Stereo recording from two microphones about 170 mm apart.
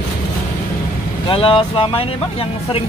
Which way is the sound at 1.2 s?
30° left (ahead or behind).